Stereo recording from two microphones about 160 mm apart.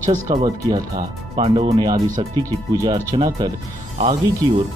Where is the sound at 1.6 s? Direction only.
40° right (ahead or behind).